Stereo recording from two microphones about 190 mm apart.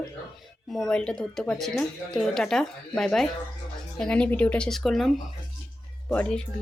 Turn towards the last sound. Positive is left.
turn(degrees=5)  # may be behind; listen again after turning